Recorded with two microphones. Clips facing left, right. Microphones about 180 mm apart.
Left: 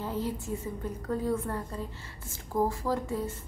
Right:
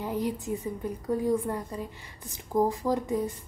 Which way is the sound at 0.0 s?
15° right (ahead or behind).